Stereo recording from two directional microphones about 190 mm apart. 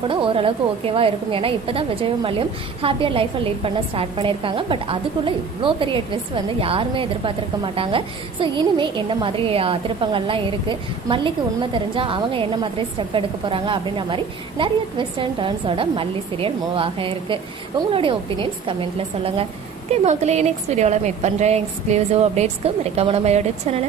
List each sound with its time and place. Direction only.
0.1 s a woman's voice: 30° right (ahead or behind)